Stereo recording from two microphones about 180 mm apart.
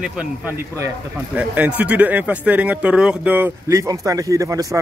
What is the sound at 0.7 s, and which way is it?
Speech, 10° right (ahead or behind).